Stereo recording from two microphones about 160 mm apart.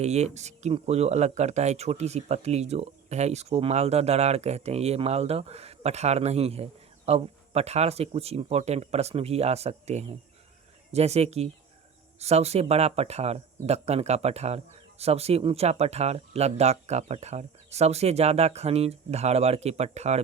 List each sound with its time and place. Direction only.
0.0 s speech: 45° right (ahead or behind)